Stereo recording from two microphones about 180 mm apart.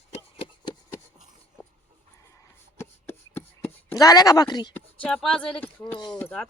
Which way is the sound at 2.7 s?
15° left (ahead or behind).